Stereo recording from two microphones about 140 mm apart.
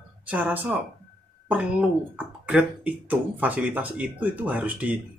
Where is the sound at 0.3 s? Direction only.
10° right (ahead or behind).